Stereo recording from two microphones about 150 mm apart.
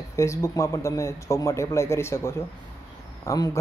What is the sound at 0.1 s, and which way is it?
Speech, 20° left (ahead or behind).